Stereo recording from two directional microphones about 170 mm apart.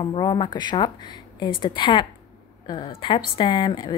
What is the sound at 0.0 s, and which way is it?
Speech, 30° left (ahead or behind).